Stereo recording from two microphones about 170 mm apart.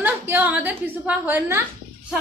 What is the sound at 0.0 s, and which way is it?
A woman's voice, 10° right (ahead or behind).